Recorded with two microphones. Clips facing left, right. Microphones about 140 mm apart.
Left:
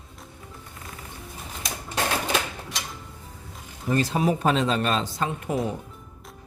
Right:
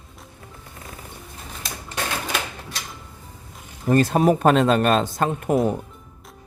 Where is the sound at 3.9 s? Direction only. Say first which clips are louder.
Right 6 dB; 50° right (ahead or behind).